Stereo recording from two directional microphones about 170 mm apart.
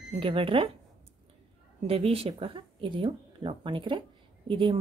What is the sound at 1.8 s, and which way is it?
Speech, 35° right (ahead or behind).